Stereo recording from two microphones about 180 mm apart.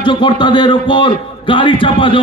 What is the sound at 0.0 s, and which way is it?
A man's voice, 25° left (ahead or behind).